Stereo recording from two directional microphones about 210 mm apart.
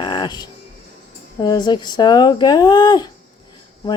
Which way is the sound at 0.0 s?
20° left (ahead or behind).